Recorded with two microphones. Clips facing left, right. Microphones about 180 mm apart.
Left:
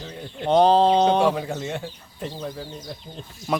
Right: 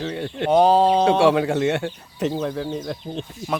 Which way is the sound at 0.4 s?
5° right (ahead or behind).